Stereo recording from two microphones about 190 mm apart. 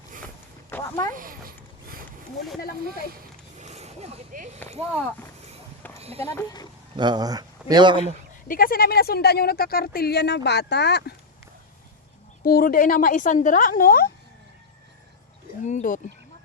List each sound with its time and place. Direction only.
0.7 s a sound: 15° left (ahead or behind)
1.1 s a sound: 45° right (ahead or behind)
3.6 s vehicle: 35° right (ahead or behind)
6.0 s speech: 30° right (ahead or behind)
6.3 s speech: 20° left (ahead or behind)
6.9 s speech: 25° right (ahead or behind)
8.4 s speech: 45° left (ahead or behind)
12.4 s a woman's voice: 50° left (ahead or behind)
15.6 s speech: 40° left (ahead or behind)